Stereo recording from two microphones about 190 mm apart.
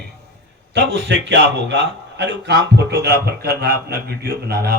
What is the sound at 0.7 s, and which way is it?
A man's voice, 70° right (ahead or behind).